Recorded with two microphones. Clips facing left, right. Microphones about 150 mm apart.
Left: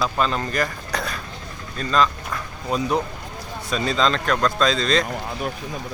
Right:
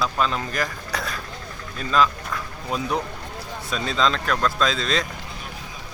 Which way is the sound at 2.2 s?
Centre (ahead or behind).